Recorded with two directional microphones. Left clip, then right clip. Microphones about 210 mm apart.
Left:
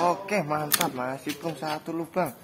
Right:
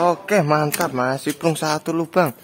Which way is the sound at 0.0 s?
50° right (ahead or behind).